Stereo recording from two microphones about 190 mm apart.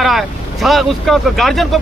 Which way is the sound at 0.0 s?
Centre (ahead or behind).